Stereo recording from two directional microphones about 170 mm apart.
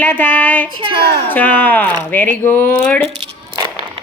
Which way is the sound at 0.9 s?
75° right (ahead or behind).